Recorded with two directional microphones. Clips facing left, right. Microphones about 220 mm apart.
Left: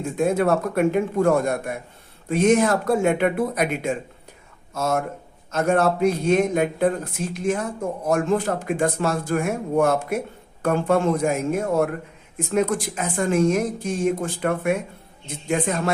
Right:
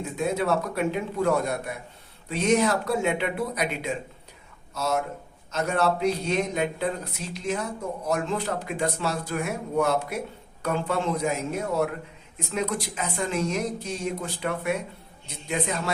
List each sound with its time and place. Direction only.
0.2 s speech: 50° left (ahead or behind)